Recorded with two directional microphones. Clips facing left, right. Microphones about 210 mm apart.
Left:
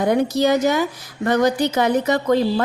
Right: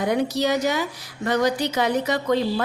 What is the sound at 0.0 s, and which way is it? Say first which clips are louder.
A woman's voice: left 4 dB; 50° left (ahead or behind).